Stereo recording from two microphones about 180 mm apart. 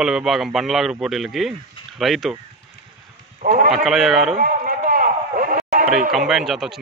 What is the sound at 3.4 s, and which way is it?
Speech, 50° right (ahead or behind).